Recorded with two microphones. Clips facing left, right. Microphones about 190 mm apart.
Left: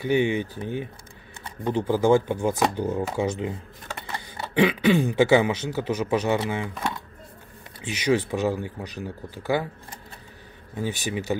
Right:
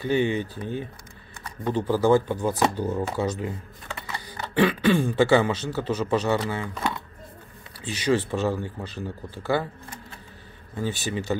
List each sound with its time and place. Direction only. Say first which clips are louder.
0.0 s speech: left 1 dB; 15° left (ahead or behind)
7.8 s speech: left 1 dB; 15° left (ahead or behind)
10.7 s speech: even; 15° left (ahead or behind)